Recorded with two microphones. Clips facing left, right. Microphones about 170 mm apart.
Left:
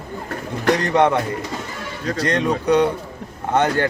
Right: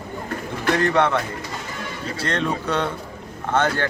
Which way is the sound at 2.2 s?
15° left (ahead or behind).